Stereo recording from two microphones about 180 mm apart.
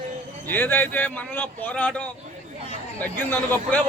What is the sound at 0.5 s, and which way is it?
A man's voice, 10° left (ahead or behind).